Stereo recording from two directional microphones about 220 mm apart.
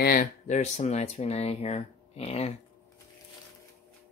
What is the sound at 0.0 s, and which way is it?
Speech, 40° left (ahead or behind).